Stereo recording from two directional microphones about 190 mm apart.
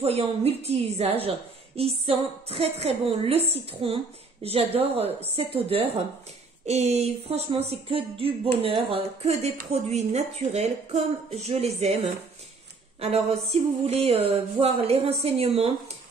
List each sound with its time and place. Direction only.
0.0 s speech: 30° right (ahead or behind)